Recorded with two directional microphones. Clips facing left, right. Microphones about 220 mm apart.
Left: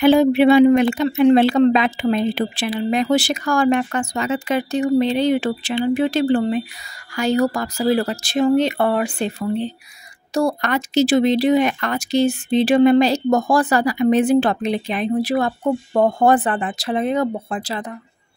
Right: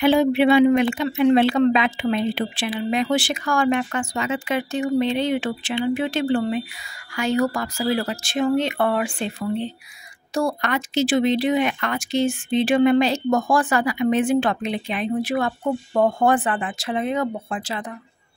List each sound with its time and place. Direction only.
0.0 s speech: 40° left (ahead or behind)